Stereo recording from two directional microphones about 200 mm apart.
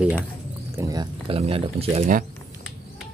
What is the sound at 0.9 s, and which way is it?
Speech, 25° right (ahead or behind).